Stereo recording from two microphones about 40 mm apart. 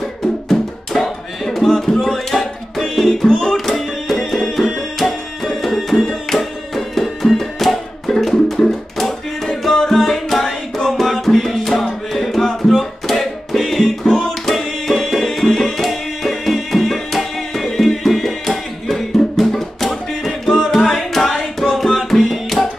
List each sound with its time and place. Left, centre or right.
0.5 s music: centre
3.3 s music: centre
3.5 s music: centre